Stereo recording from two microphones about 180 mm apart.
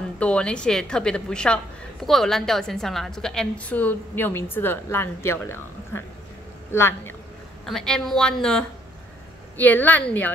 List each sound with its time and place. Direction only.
0.2 s a woman's voice: 5° left (ahead or behind)
7.6 s a woman's voice: 5° left (ahead or behind)